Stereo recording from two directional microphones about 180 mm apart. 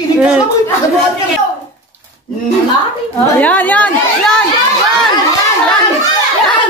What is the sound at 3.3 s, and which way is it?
Speech, 10° left (ahead or behind).